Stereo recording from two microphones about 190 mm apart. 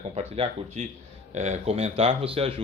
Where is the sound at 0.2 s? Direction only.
35° right (ahead or behind).